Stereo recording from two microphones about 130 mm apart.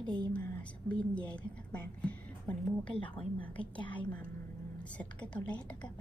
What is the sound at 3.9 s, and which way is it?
A woman's voice, 10° left (ahead or behind).